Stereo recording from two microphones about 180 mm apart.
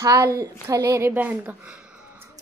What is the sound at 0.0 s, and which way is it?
A woman's voice, 15° right (ahead or behind).